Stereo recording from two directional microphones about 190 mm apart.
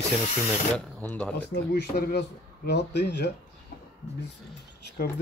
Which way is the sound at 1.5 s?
60° left (ahead or behind).